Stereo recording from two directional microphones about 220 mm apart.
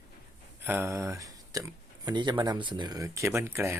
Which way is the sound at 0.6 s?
10° right (ahead or behind).